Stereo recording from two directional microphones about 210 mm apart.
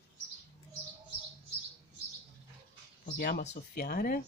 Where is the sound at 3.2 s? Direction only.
50° left (ahead or behind).